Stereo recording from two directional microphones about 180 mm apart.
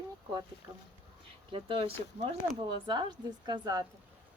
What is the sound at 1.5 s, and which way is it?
Speech, 30° right (ahead or behind).